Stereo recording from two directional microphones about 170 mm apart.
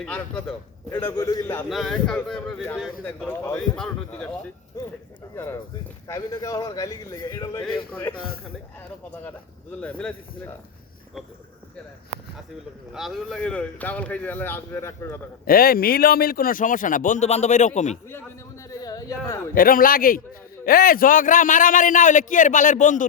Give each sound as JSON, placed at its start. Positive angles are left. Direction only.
{"t": 0.0, "sound": "a man's voice", "side_deg": 5}
{"t": 1.7, "sound": "a man's voice", "side_deg": 0}
{"t": 4.7, "sound": "a man's voice", "side_deg": 20}
{"t": 9.8, "sound": "a man's voice", "side_deg": 10}
{"t": 12.9, "sound": "a man's voice", "side_deg": 0}
{"t": 15.4, "sound": "a man's voice", "side_deg": 60}
{"t": 18.7, "sound": "a sound", "side_deg": 20}
{"t": 19.5, "sound": "a man's voice", "side_deg": 55}